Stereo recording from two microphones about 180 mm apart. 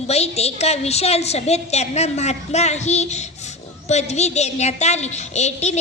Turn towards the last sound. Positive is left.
turn(degrees=40)  # may be behind; listen again after turning